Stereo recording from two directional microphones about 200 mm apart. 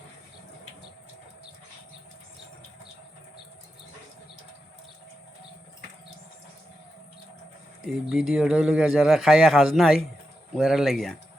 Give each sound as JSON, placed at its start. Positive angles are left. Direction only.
{"t": 7.9, "sound": "a man's voice", "side_deg": 0}